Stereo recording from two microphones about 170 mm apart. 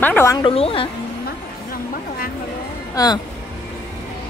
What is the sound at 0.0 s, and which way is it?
Speech, 15° left (ahead or behind).